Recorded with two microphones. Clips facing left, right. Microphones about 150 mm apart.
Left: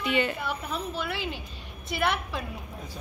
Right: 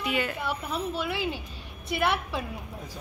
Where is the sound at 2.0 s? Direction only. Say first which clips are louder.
Right 1 dB; 5° right (ahead or behind).